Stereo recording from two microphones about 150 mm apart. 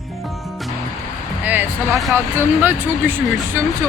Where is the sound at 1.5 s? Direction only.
10° right (ahead or behind).